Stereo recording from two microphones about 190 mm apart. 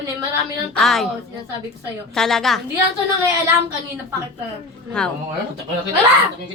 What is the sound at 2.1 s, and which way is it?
Speech, centre (ahead or behind).